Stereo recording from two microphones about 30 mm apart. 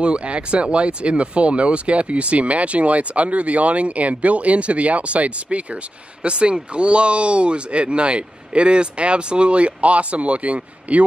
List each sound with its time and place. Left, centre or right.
0.0 s speech: right
6.2 s speech: right